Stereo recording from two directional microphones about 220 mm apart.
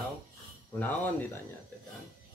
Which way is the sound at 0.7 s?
5° left (ahead or behind).